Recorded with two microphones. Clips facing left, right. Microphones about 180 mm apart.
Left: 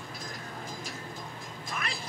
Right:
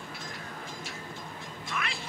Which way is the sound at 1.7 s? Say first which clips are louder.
Right 1 dB; 35° left (ahead or behind).